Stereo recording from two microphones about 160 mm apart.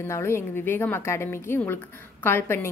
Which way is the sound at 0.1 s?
15° left (ahead or behind).